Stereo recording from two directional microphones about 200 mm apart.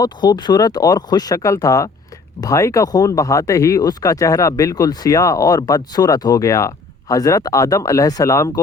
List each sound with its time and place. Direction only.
0.0 s speech: 20° left (ahead or behind)